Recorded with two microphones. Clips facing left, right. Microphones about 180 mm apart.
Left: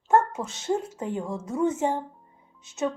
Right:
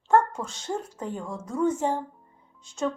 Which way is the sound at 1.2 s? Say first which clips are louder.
Even; 5° left (ahead or behind).